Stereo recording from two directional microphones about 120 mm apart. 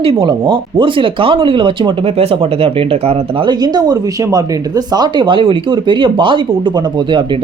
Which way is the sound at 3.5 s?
35° right (ahead or behind).